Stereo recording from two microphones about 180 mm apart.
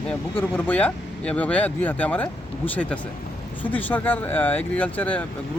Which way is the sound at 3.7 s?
10° left (ahead or behind).